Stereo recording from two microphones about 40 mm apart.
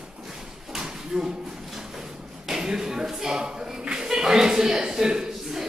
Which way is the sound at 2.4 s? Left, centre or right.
Centre.